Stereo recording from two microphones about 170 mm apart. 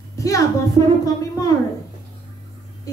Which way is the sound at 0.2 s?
20° left (ahead or behind).